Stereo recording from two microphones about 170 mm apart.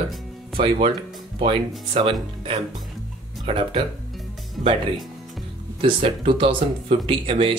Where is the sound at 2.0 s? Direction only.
30° right (ahead or behind).